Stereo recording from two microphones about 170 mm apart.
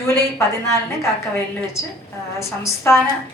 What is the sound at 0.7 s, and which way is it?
A woman's voice, 15° left (ahead or behind).